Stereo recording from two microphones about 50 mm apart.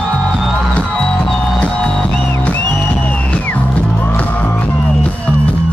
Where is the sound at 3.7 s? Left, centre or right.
Left.